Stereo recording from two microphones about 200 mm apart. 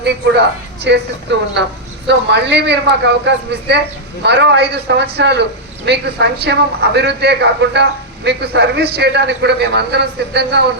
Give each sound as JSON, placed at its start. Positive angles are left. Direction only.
{"t": 0.0, "sound": "a man's voice", "side_deg": -60}